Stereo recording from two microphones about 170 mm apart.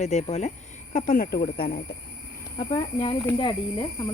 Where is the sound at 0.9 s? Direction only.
55° left (ahead or behind).